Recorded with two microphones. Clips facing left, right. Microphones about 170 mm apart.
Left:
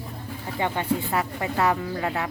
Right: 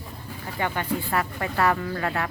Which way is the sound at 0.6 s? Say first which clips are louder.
Left 2 dB; 20° left (ahead or behind).